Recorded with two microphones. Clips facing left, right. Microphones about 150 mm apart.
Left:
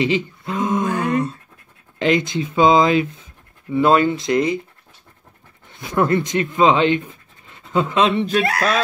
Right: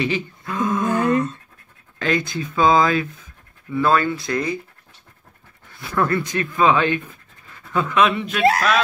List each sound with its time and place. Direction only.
0.0 s a sound: 20° left (ahead or behind)
2.0 s speech: 20° left (ahead or behind)
5.7 s speech: 20° left (ahead or behind)